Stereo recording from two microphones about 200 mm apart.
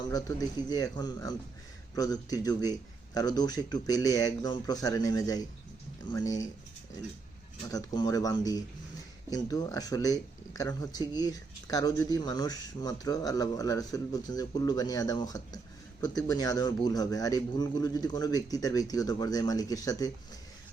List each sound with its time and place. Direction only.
0.1 s speech: 20° left (ahead or behind)
7.7 s speech: 20° left (ahead or behind)